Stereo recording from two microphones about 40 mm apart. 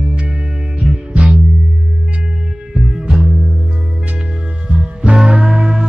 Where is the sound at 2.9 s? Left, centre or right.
Centre.